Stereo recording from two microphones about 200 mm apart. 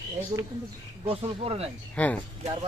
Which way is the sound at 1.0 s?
30° right (ahead or behind).